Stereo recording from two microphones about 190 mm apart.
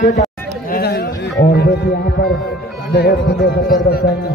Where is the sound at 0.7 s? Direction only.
55° left (ahead or behind).